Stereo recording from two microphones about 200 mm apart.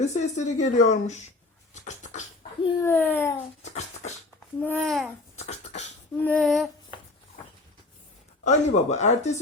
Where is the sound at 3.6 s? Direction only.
35° left (ahead or behind).